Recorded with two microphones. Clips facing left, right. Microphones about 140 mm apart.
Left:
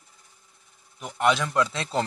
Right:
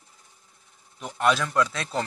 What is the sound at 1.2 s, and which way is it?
Speech, 20° left (ahead or behind).